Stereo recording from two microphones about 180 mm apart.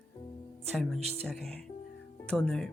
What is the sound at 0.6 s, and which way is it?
Music, centre (ahead or behind).